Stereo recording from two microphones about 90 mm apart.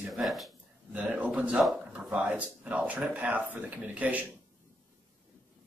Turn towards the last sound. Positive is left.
turn(degrees=-20)  # may be behind; listen again after turning